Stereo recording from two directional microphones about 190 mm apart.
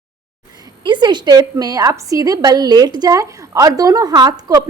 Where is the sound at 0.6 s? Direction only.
25° right (ahead or behind).